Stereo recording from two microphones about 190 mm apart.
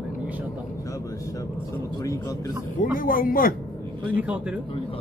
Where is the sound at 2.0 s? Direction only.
15° left (ahead or behind).